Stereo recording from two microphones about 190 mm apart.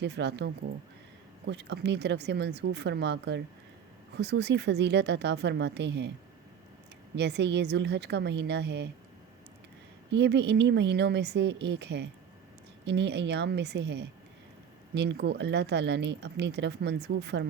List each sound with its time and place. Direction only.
0.0 s speech: 65° right (ahead or behind)
7.2 s speech: 65° right (ahead or behind)
10.1 s speech: 65° right (ahead or behind)